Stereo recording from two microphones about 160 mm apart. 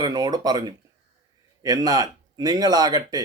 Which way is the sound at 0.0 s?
25° right (ahead or behind).